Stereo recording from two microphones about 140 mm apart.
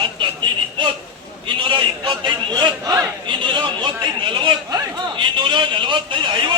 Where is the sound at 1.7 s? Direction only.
35° right (ahead or behind).